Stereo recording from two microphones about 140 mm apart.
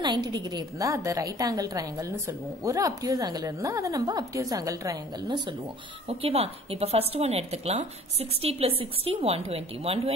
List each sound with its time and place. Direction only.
0.0 s a woman's voice: 30° right (ahead or behind)
6.0 s speech: 45° right (ahead or behind)